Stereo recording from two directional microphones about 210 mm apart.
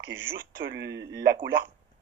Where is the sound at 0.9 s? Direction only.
20° right (ahead or behind).